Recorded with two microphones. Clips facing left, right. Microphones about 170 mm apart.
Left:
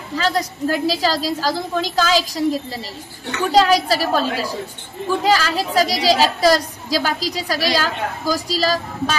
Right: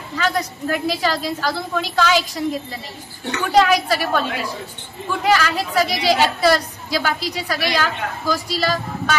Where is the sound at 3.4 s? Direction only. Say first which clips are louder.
Left 1 dB; 35° left (ahead or behind).